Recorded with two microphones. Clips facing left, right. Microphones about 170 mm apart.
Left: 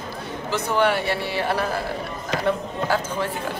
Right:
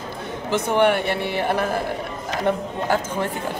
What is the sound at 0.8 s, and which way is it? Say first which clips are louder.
Speech: right 2 dB; 55° right (ahead or behind).